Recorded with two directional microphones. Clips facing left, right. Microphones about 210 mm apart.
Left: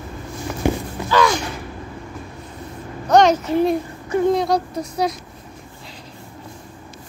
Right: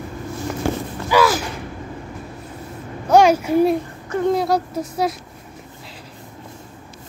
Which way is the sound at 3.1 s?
10° right (ahead or behind).